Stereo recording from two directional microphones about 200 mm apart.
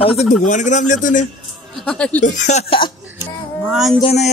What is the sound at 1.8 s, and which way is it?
Speech, 5° left (ahead or behind).